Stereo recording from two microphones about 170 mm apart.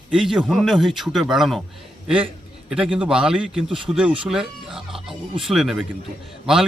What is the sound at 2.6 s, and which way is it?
Speech, 5° right (ahead or behind).